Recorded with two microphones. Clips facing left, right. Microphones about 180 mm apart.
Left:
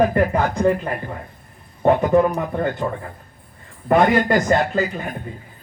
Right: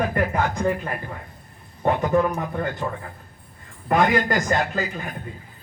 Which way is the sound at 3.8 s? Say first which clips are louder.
Left 4 dB; 30° left (ahead or behind).